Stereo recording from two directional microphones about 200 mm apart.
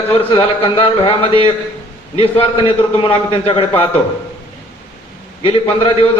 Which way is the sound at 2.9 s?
25° left (ahead or behind).